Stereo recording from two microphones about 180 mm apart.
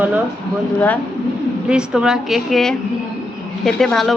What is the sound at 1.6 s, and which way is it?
A woman's voice, 5° right (ahead or behind).